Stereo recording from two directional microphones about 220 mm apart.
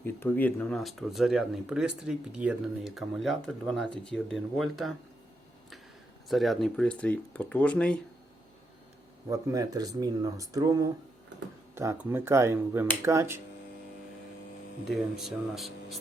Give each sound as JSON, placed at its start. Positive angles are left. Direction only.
{"t": 0.0, "sound": "speech", "side_deg": 10}
{"t": 6.2, "sound": "speech", "side_deg": 0}
{"t": 9.3, "sound": "speech", "side_deg": -15}
{"t": 14.8, "sound": "speech", "side_deg": 0}